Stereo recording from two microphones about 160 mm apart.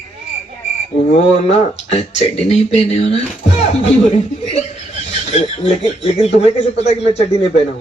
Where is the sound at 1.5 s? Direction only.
40° left (ahead or behind).